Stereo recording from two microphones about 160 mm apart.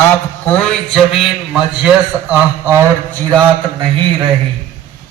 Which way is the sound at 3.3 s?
30° right (ahead or behind).